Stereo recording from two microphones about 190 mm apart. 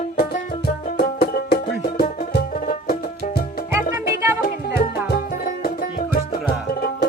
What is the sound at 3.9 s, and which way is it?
Music, 15° right (ahead or behind).